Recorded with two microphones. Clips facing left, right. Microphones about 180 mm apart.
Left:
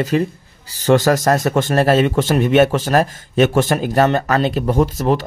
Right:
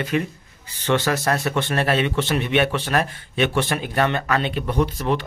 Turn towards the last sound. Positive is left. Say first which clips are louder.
# left 5 dB
turn(degrees=40)  # may be behind; listen again after turning